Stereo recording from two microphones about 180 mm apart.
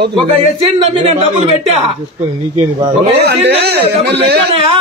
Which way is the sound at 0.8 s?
35° right (ahead or behind).